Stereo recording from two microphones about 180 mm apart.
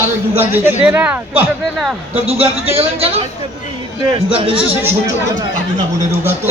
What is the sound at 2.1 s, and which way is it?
A man's voice, 35° right (ahead or behind).